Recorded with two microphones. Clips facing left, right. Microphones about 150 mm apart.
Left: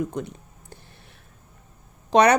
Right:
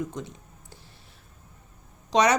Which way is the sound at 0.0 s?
60° left (ahead or behind).